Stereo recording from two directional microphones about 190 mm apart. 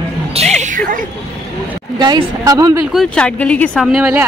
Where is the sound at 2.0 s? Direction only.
20° right (ahead or behind).